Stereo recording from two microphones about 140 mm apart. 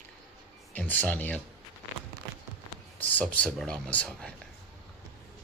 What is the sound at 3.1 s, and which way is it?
Speech, 10° left (ahead or behind).